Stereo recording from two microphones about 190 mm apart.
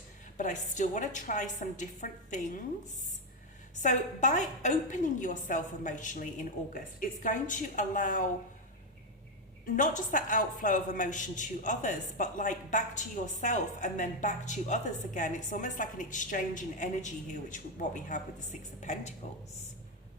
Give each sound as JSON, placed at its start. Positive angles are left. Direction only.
{"t": 0.3, "sound": "a woman's voice", "side_deg": 40}
{"t": 3.8, "sound": "a woman's voice", "side_deg": 40}
{"t": 9.6, "sound": "a woman's voice", "side_deg": 45}